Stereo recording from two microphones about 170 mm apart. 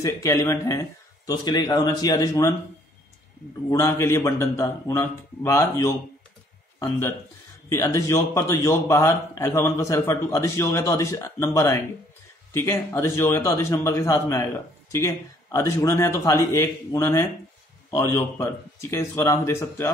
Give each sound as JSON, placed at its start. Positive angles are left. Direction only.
{"t": 0.0, "sound": "speech", "side_deg": 15}
{"t": 3.7, "sound": "a man's voice", "side_deg": 15}